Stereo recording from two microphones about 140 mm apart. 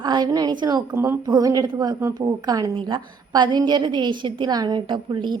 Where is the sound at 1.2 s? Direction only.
30° right (ahead or behind).